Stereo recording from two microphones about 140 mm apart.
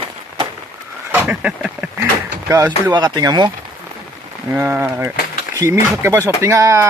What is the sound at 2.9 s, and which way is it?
Speech, 30° right (ahead or behind).